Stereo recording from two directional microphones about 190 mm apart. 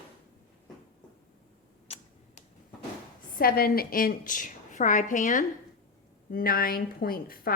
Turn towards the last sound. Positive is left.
turn(degrees=50)  # may be behind; listen again after turning